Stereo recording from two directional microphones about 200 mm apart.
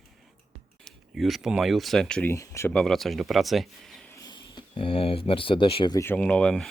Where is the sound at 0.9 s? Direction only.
Centre (ahead or behind).